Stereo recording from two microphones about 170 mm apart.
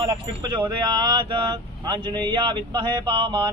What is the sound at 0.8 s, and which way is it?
Speech, 25° right (ahead or behind).